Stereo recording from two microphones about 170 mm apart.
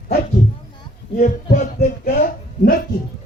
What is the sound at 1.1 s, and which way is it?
Music, 55° left (ahead or behind).